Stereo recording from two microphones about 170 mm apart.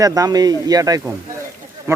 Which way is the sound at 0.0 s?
20° right (ahead or behind).